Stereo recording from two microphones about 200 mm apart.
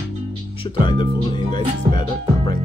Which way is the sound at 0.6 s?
25° left (ahead or behind).